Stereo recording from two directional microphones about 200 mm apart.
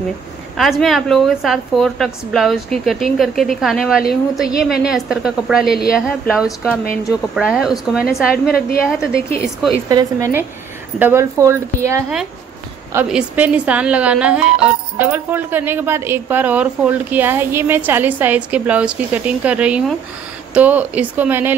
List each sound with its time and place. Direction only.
0.6 s a woman's voice: centre (ahead or behind)
8.5 s a woman's voice: 50° left (ahead or behind)
8.8 s a woman's voice: 5° right (ahead or behind)
9.8 s a woman's voice: 15° right (ahead or behind)